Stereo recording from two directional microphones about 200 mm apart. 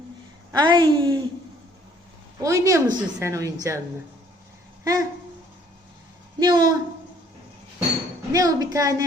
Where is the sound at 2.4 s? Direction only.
15° right (ahead or behind).